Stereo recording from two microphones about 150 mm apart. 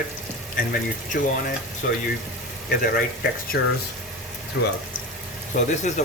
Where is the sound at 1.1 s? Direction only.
80° left.